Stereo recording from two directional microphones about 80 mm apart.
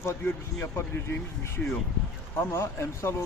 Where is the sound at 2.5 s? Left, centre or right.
Left.